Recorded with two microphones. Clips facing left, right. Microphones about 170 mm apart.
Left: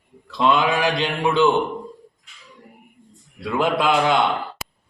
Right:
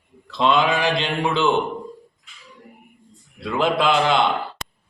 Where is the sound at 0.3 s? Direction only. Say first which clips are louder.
Even; 5° left (ahead or behind).